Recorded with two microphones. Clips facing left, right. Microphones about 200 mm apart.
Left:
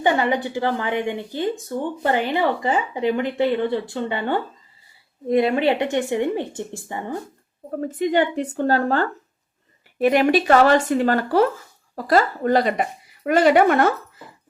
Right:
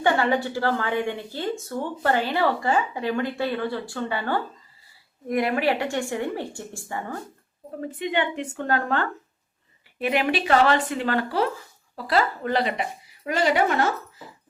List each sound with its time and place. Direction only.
0.0 s speech: 15° left (ahead or behind)
7.8 s a woman's voice: 40° left (ahead or behind)
13.2 s speech: 55° left (ahead or behind)